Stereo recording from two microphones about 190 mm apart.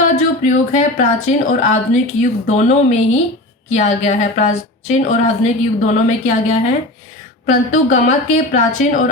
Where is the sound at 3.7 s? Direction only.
40° left (ahead or behind).